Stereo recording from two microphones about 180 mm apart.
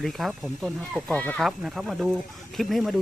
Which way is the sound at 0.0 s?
Centre (ahead or behind).